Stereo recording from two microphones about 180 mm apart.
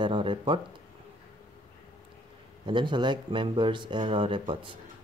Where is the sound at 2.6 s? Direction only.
25° right (ahead or behind).